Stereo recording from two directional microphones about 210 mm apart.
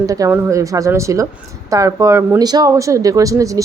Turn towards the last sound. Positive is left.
turn(degrees=-15)  # may be behind; listen again after turning